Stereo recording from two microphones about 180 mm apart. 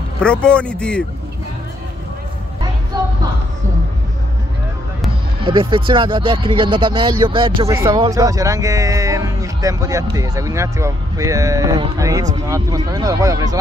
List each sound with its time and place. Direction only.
0.2 s speech: 5° left (ahead or behind)
5.4 s speech: 25° right (ahead or behind)
7.6 s speech: 15° right (ahead or behind)